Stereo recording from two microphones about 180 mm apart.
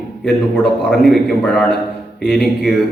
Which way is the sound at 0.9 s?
Centre (ahead or behind).